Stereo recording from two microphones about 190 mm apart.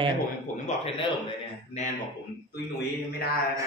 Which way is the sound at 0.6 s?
30° left (ahead or behind).